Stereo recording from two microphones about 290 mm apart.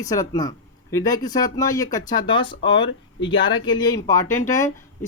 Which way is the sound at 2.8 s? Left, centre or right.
Left.